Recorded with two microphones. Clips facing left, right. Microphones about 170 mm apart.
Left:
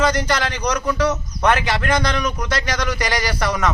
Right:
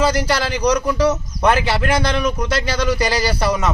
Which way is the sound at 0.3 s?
30° right (ahead or behind).